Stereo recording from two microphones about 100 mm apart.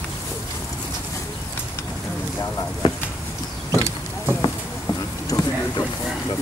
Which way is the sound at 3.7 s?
30° right (ahead or behind).